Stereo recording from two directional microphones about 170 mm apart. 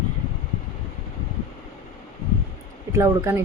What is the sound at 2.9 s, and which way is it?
Speech, 20° right (ahead or behind).